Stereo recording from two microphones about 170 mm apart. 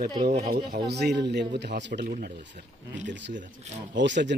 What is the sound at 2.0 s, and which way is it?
Speech, 55° right (ahead or behind).